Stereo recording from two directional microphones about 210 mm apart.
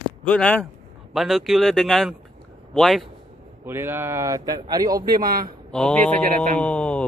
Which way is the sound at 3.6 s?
10° right (ahead or behind).